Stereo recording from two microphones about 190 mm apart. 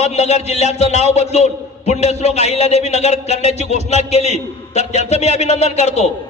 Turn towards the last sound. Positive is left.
turn(degrees=35)  # may be behind; listen again after turning